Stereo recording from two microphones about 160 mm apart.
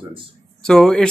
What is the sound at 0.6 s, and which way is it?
Speech, 5° left (ahead or behind).